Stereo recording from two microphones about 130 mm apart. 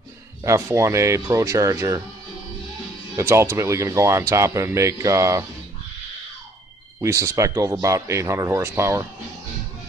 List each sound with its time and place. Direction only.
0.4 s speech: 20° right (ahead or behind)
3.2 s speech: 20° right (ahead or behind)
7.0 s speech: 25° right (ahead or behind)